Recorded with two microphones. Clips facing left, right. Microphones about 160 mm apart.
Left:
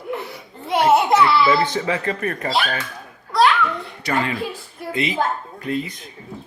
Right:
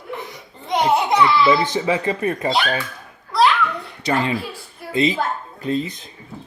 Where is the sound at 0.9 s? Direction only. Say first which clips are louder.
Left 2 dB; 5° left (ahead or behind).